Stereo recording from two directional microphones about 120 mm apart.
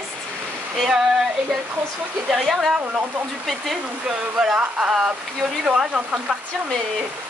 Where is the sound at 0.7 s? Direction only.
5° right (ahead or behind).